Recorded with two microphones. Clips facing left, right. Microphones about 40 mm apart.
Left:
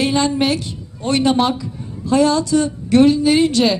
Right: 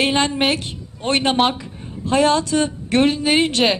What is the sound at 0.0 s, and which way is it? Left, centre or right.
A woman's voice, right.